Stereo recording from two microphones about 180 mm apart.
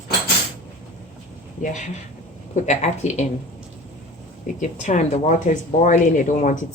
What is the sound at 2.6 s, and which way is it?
Speech, 40° left (ahead or behind).